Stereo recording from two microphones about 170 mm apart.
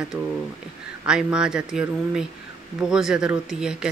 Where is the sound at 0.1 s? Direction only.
Centre (ahead or behind).